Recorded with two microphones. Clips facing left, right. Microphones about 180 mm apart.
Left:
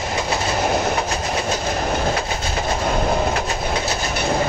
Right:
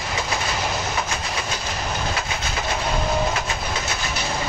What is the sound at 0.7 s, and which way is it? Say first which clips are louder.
Train: left 6 dB; 55° left (ahead or behind).